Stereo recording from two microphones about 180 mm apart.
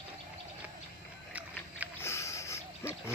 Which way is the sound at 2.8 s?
15° left (ahead or behind).